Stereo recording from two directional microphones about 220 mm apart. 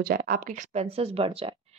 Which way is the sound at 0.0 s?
45° right (ahead or behind).